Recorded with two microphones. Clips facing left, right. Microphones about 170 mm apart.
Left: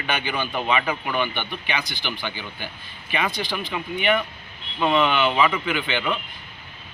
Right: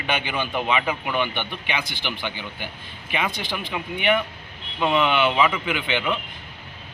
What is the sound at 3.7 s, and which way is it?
A man's voice, 15° right (ahead or behind).